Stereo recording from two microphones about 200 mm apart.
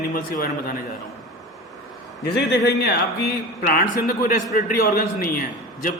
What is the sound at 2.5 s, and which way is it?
A man's voice, 50° left (ahead or behind).